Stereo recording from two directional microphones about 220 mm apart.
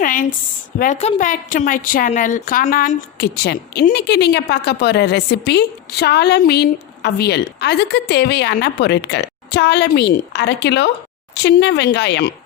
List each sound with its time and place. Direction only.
0.0 s a woman's voice: 40° left (ahead or behind)